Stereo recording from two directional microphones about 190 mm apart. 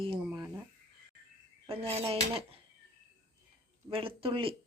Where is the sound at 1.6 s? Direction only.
30° right (ahead or behind).